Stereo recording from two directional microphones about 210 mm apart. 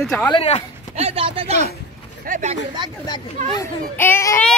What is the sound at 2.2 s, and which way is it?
Speech, 35° right (ahead or behind).